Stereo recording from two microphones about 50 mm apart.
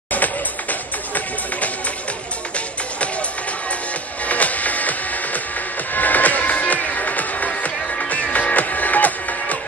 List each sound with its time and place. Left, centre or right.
0.1 s music: left
4.3 s music: left